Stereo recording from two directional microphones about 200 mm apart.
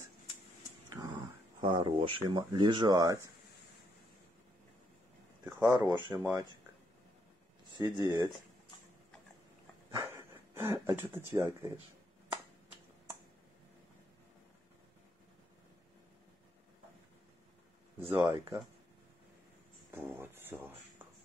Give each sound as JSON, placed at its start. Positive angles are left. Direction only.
{"t": 0.9, "sound": "speech", "side_deg": -20}
{"t": 5.7, "sound": "speech", "side_deg": -20}
{"t": 6.1, "sound": "speech", "side_deg": -10}
{"t": 7.8, "sound": "speech", "side_deg": -15}
{"t": 9.8, "sound": "speech", "side_deg": -15}
{"t": 17.9, "sound": "speech", "side_deg": -10}
{"t": 19.9, "sound": "speech", "side_deg": -10}